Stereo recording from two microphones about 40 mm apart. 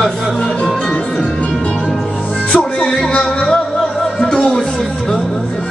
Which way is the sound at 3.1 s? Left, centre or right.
Left.